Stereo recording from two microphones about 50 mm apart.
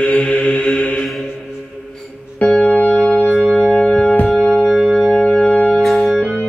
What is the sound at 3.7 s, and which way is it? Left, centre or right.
Music, left.